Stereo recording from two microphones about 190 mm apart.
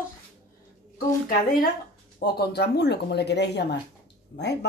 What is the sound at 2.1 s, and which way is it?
Speech, 55° left (ahead or behind).